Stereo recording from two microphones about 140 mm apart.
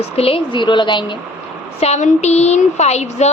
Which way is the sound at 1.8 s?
50° left (ahead or behind).